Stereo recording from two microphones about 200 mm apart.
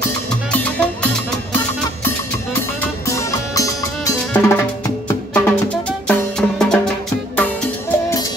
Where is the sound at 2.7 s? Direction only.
15° left (ahead or behind).